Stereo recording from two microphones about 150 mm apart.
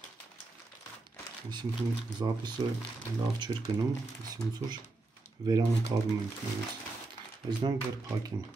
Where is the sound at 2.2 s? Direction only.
30° right (ahead or behind).